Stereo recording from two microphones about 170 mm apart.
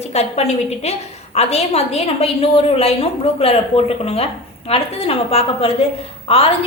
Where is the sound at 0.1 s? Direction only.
40° left (ahead or behind).